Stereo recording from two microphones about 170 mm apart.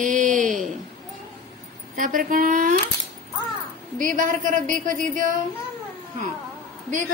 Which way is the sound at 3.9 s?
50° right (ahead or behind).